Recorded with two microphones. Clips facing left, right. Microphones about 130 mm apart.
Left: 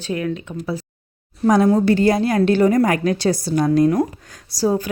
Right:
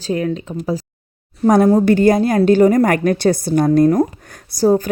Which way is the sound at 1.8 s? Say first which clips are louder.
Right 3 dB; 50° right (ahead or behind).